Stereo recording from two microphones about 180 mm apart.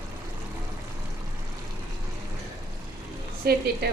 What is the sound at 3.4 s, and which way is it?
Speech, 55° right (ahead or behind).